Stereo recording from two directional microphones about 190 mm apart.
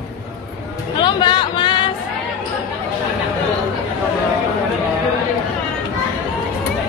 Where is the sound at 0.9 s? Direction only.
25° left (ahead or behind).